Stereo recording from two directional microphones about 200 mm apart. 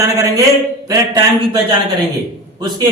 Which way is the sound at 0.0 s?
15° right (ahead or behind).